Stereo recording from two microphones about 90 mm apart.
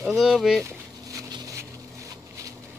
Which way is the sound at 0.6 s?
35° right (ahead or behind).